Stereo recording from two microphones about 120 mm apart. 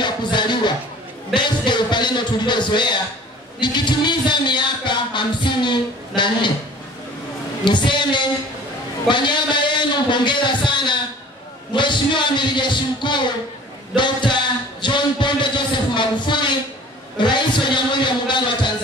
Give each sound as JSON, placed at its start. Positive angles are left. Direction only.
{"t": 0.0, "sound": "music", "side_deg": 40}
{"t": 1.7, "sound": "speech", "side_deg": 40}
{"t": 7.6, "sound": "speech", "side_deg": 40}